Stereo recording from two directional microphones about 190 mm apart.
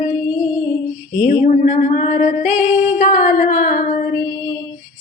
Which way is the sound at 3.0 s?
40° left (ahead or behind).